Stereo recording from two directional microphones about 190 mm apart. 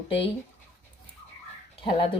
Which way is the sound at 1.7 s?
30° left (ahead or behind).